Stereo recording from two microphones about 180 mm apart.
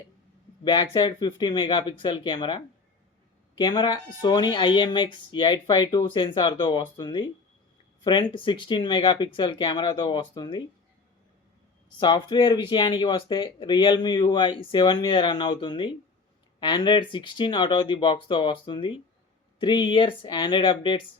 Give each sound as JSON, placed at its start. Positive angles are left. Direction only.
{"t": 0.6, "sound": "speech", "side_deg": 25}
{"t": 3.6, "sound": "speech", "side_deg": 25}
{"t": 11.9, "sound": "speech", "side_deg": 25}